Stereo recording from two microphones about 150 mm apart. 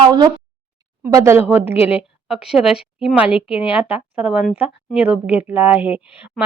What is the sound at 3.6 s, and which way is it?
A woman's voice, 10° right (ahead or behind).